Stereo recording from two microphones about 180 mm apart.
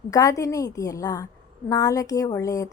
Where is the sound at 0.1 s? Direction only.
20° left (ahead or behind).